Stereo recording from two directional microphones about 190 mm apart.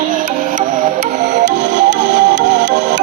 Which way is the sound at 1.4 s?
75° right (ahead or behind).